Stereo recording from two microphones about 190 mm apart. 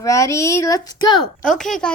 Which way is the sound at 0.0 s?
15° left (ahead or behind).